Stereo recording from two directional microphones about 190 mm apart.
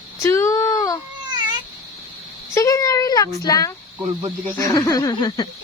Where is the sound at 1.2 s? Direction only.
25° right (ahead or behind).